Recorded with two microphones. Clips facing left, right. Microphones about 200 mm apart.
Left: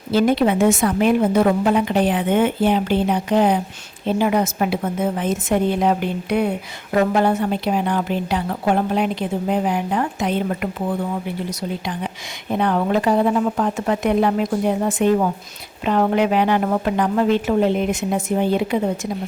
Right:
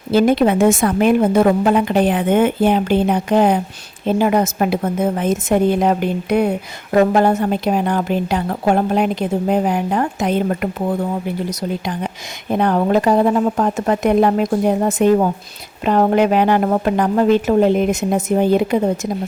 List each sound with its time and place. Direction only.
0.1 s a woman's voice: 50° right (ahead or behind)
12.5 s a woman's voice: 45° right (ahead or behind)